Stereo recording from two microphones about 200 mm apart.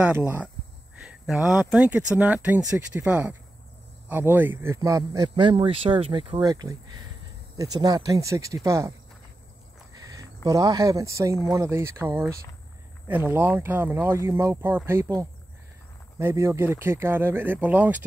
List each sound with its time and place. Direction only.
0.0 s a man's voice: 10° right (ahead or behind)
10.0 s speech: 15° right (ahead or behind)